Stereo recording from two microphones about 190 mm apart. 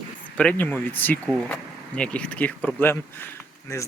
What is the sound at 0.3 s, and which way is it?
Speech, 10° left (ahead or behind).